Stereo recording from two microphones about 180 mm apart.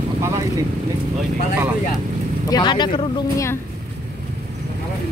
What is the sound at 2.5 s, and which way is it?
Speech, 25° left (ahead or behind).